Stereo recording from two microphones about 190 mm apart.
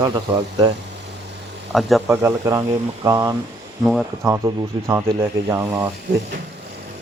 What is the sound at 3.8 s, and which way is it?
Speech, centre (ahead or behind).